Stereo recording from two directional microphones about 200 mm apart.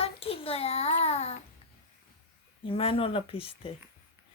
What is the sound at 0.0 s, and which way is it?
Child singing, 30° left (ahead or behind).